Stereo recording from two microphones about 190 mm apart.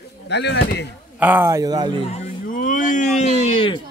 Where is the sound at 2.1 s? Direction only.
40° left (ahead or behind).